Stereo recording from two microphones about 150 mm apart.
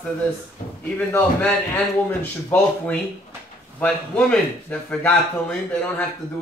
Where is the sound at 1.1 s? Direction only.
10° left (ahead or behind).